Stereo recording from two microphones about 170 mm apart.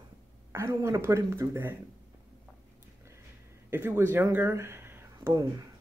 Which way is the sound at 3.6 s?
15° right (ahead or behind).